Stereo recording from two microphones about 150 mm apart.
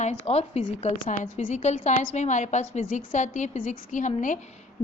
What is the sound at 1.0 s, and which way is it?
A woman's voice, 55° left (ahead or behind).